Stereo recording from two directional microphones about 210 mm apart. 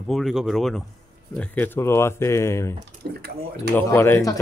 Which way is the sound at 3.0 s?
45° right (ahead or behind).